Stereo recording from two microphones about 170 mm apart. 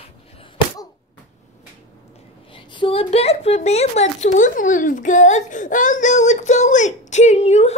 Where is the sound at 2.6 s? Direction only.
30° left (ahead or behind).